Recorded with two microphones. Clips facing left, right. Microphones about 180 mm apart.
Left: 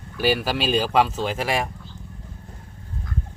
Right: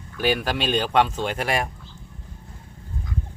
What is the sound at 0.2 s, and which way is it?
Speech, 5° left (ahead or behind).